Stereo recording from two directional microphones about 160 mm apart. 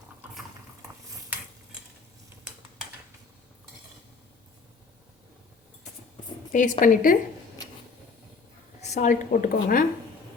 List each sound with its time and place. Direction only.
6.5 s a woman's voice: 50° left (ahead or behind)
8.8 s a woman's voice: 45° left (ahead or behind); by 9.8 s 60° left (ahead or behind)